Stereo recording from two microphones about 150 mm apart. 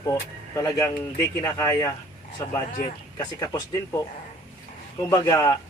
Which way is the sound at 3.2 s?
25° left (ahead or behind).